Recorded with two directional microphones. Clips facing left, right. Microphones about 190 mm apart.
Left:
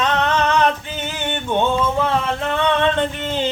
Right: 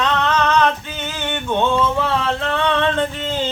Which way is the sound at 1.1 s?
15° left (ahead or behind).